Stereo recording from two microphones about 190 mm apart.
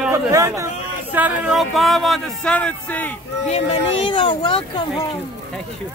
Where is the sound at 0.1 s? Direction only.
15° right (ahead or behind); by 3.1 s 5° left (ahead or behind).